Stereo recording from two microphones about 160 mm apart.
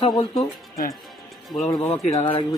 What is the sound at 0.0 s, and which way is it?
Speech, 30° left (ahead or behind).